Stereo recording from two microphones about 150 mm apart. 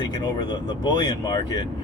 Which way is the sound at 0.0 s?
30° left (ahead or behind).